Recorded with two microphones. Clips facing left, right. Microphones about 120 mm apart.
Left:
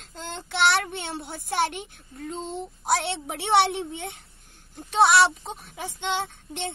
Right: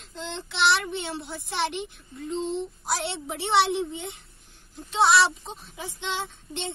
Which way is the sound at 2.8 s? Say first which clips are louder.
Left 4 dB; 65° left (ahead or behind).